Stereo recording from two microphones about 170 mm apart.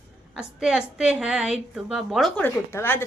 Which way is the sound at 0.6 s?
5° right (ahead or behind).